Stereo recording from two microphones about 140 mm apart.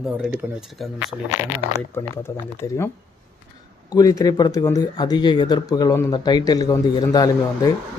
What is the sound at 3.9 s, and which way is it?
Speech, 25° left (ahead or behind).